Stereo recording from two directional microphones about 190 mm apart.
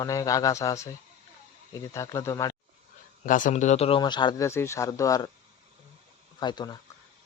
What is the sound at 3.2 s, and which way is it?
Speech, 45° left (ahead or behind).